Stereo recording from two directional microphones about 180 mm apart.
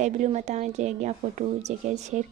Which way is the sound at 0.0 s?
40° right (ahead or behind).